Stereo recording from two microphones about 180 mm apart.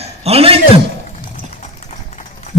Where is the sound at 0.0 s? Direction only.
35° right (ahead or behind).